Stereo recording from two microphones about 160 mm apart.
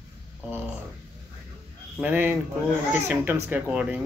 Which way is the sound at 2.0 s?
10° right (ahead or behind).